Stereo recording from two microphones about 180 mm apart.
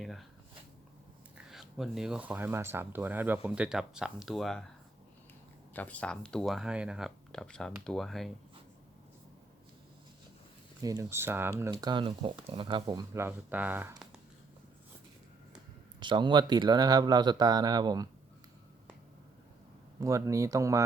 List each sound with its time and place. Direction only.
0.0 s speech: centre (ahead or behind)
1.5 s speech: centre (ahead or behind)
5.7 s speech: 10° left (ahead or behind)
10.8 s speech: 15° right (ahead or behind)
16.0 s speech: 25° right (ahead or behind)
20.0 s speech: 20° right (ahead or behind)